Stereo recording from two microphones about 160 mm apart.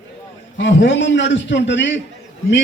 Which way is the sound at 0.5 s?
90° left.